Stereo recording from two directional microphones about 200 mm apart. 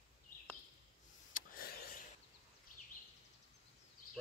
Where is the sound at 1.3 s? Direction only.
45° left (ahead or behind).